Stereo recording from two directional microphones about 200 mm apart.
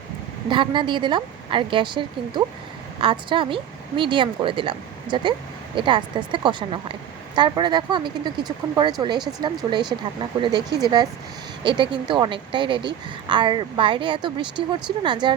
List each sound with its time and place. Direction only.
0.4 s speech: 25° right (ahead or behind)